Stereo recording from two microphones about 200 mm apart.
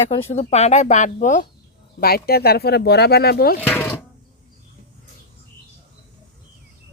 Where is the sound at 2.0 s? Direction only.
50° left (ahead or behind).